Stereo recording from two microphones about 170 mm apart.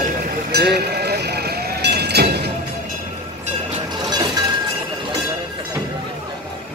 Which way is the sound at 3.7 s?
25° right (ahead or behind).